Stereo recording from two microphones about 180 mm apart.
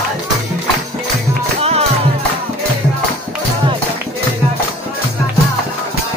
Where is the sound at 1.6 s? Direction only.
35° right (ahead or behind).